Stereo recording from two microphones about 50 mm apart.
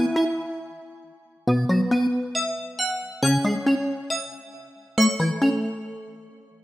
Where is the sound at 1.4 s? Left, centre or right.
Centre.